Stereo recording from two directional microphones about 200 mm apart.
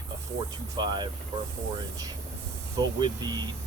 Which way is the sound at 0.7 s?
20° right (ahead or behind).